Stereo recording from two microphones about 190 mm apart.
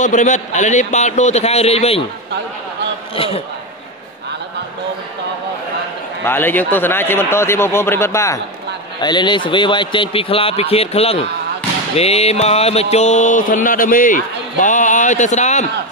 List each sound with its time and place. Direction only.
0.0 s mantra: 40° left (ahead or behind)
6.2 s a man's voice: 10° left (ahead or behind); by 11.2 s 30° left (ahead or behind)
11.9 s mantra: 35° left (ahead or behind)